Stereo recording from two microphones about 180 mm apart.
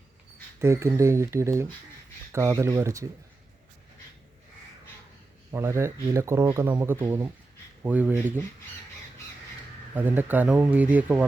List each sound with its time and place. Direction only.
0.6 s speech: 15° right (ahead or behind)
5.5 s speech: 15° right (ahead or behind)
9.9 s speech: 10° right (ahead or behind)